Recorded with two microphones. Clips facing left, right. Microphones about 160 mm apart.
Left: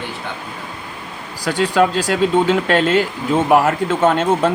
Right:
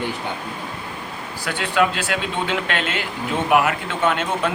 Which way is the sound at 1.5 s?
40° left (ahead or behind).